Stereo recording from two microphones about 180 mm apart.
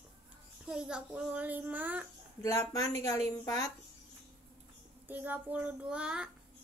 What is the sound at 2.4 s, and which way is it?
Speech, 20° left (ahead or behind).